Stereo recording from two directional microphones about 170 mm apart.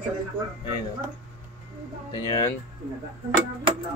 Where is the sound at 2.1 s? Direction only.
25° left (ahead or behind).